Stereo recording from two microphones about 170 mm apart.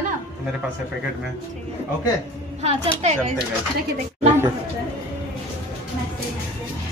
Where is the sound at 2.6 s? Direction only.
40° right (ahead or behind).